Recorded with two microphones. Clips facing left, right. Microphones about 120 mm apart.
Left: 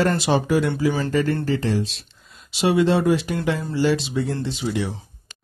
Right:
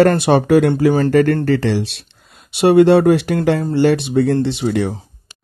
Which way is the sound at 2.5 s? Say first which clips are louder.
Right 9 dB; 60° right (ahead or behind).